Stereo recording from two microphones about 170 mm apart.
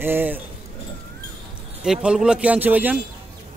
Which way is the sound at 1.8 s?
5° right (ahead or behind).